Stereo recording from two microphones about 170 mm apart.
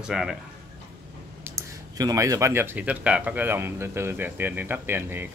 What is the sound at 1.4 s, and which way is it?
Speech, 20° right (ahead or behind).